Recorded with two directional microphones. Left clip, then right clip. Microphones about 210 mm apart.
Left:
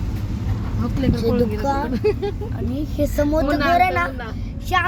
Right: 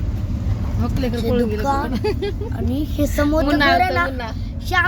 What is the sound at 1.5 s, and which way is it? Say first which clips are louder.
Speech: right 1 dB; 5° left (ahead or behind).